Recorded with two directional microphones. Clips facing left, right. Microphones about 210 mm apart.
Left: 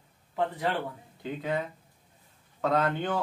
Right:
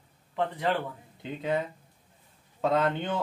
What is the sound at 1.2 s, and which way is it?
Speech, 25° right (ahead or behind).